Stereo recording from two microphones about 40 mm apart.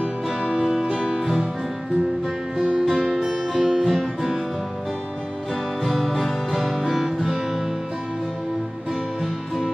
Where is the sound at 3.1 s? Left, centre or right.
Centre.